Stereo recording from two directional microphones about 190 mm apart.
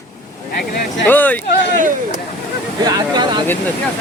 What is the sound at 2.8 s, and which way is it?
Speech, 20° right (ahead or behind).